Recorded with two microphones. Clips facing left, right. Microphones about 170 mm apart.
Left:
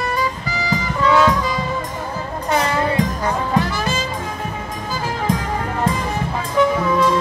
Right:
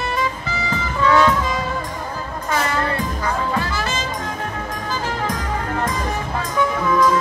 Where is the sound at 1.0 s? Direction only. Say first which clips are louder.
Even; centre (ahead or behind).